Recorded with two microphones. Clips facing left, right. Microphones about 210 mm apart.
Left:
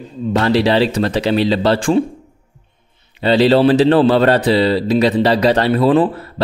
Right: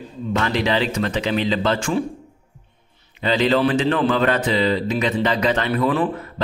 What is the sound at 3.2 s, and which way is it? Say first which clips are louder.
Speech: left 6 dB; 35° left (ahead or behind).